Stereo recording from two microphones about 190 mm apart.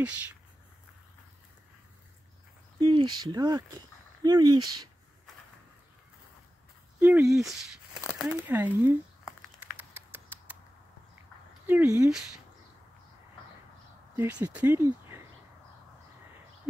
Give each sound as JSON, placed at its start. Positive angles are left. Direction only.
{"t": 2.8, "sound": "speech", "side_deg": -25}
{"t": 7.0, "sound": "speech", "side_deg": -10}
{"t": 7.2, "sound": "speech", "side_deg": 0}
{"t": 8.2, "sound": "crumpling", "side_deg": -10}
{"t": 9.8, "sound": "a sound", "side_deg": -10}
{"t": 11.6, "sound": "speech", "side_deg": -10}
{"t": 14.1, "sound": "speech", "side_deg": -10}
{"t": 14.9, "sound": "a sound", "side_deg": -10}